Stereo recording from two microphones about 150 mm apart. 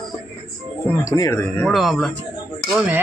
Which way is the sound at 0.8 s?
20° left (ahead or behind).